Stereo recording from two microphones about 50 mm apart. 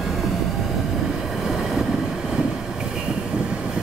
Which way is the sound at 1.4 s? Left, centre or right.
Centre.